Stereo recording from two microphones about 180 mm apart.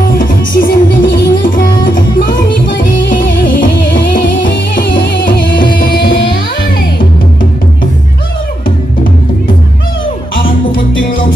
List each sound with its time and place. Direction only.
0.2 s music: 55° left (ahead or behind)
3.4 s music: 50° left (ahead or behind)
4.5 s music: 70° left (ahead or behind)